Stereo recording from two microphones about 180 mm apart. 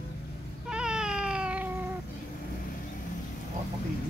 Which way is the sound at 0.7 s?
5° right (ahead or behind).